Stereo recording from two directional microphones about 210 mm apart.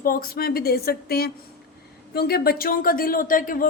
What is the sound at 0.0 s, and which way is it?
A woman's voice, 45° left (ahead or behind).